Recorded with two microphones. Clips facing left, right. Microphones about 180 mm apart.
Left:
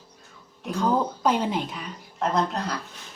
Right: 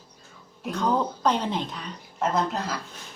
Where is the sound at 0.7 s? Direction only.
5° left (ahead or behind).